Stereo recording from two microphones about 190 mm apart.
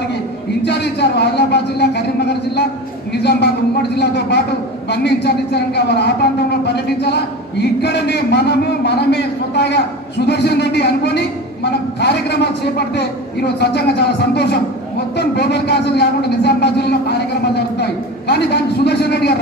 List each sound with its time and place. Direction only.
0.7 s a man's voice: 60° left (ahead or behind)